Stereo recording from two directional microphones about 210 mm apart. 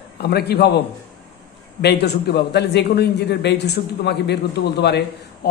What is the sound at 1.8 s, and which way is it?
Speech, 50° left (ahead or behind).